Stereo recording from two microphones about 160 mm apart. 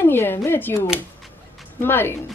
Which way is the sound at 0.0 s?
15° left (ahead or behind).